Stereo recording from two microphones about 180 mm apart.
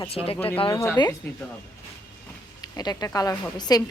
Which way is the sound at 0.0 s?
30° left (ahead or behind).